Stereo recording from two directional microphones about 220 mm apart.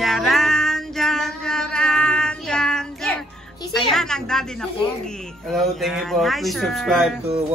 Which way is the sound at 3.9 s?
Centre (ahead or behind).